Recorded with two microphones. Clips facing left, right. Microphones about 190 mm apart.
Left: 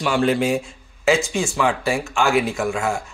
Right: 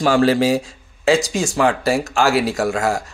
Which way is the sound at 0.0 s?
40° right (ahead or behind).